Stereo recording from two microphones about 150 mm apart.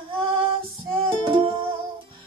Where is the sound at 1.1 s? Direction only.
35° right (ahead or behind).